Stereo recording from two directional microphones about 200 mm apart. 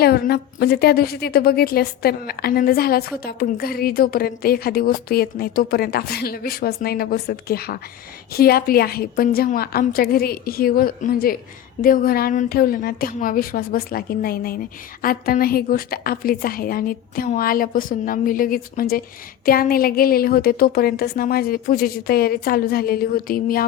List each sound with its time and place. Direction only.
0.0 s a woman's voice: 50° left (ahead or behind)